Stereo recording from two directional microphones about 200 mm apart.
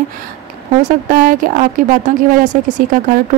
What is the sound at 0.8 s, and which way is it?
Speech, 45° right (ahead or behind).